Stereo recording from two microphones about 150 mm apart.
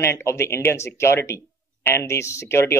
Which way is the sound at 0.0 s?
15° left (ahead or behind).